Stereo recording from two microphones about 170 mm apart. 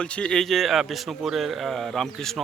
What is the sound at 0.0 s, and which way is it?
Speech, 5° left (ahead or behind).